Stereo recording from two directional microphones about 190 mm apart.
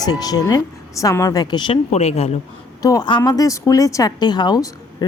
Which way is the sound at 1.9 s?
35° left (ahead or behind).